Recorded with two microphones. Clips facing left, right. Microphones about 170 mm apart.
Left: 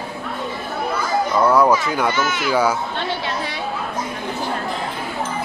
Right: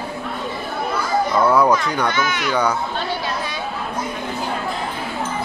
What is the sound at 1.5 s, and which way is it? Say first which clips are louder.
Speech: left 1 dB; centre (ahead or behind).